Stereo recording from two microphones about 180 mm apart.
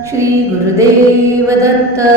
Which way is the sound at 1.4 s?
15° right (ahead or behind).